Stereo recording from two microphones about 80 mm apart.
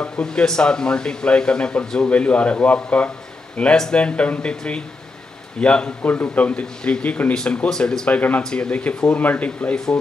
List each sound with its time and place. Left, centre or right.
0.0 s speech: centre